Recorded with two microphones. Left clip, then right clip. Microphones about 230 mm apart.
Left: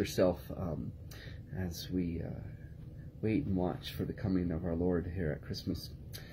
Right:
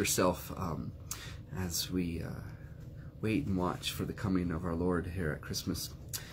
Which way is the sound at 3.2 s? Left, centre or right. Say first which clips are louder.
Even; centre.